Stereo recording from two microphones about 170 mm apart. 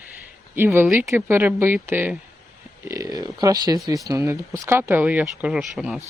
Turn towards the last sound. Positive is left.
turn(degrees=-5)  # may be behind; listen again after turning